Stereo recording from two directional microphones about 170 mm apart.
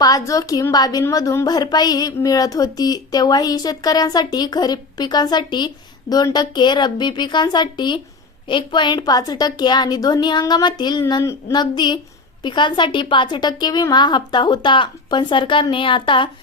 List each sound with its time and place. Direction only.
0.0 s a woman's voice: 20° left (ahead or behind)